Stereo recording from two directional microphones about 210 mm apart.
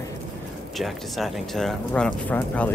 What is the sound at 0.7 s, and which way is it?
Speech, centre (ahead or behind).